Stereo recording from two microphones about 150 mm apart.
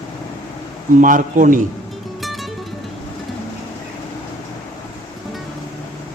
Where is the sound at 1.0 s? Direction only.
60° right (ahead or behind).